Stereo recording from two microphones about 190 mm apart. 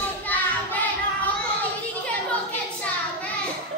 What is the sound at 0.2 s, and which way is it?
Child singing, 10° left (ahead or behind).